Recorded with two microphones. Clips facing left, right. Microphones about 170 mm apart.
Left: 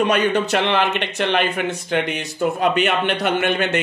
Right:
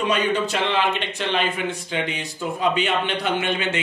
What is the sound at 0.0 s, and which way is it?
Speech, 65° left (ahead or behind).